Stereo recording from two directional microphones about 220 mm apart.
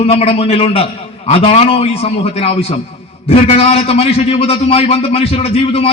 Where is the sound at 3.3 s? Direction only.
25° left (ahead or behind).